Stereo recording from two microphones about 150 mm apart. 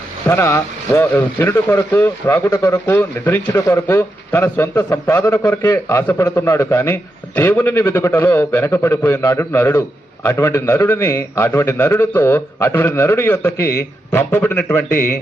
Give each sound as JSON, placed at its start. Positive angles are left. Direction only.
{"t": 0.3, "sound": "speech", "side_deg": 15}